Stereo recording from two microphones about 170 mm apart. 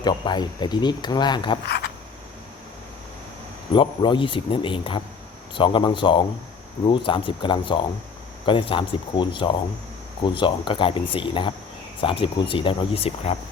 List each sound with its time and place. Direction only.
0.0 s speech: 25° left (ahead or behind)
3.8 s speech: 30° left (ahead or behind)